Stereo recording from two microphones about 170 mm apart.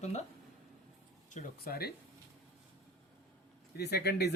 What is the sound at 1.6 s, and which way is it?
Speech, 65° left (ahead or behind).